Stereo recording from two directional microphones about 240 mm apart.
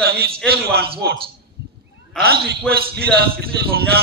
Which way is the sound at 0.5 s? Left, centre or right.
Right.